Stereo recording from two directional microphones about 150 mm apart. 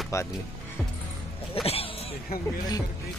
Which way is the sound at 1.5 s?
40° left (ahead or behind).